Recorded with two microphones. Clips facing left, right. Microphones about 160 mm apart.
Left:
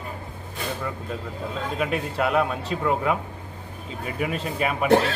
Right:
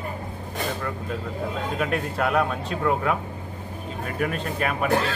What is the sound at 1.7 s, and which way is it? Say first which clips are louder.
Speech: left 1 dB; 5° left (ahead or behind).